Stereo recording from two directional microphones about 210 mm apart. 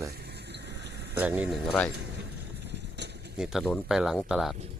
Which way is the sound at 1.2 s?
5° right (ahead or behind).